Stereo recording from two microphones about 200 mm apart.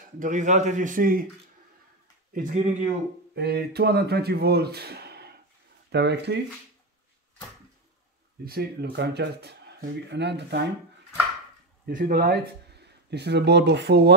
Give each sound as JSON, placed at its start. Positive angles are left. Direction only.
{"t": 0.2, "sound": "a man's voice", "side_deg": -40}
{"t": 2.3, "sound": "a man's voice", "side_deg": -40}
{"t": 3.3, "sound": "speech", "side_deg": -55}
{"t": 8.5, "sound": "speech", "side_deg": -55}
{"t": 11.8, "sound": "speech", "side_deg": -50}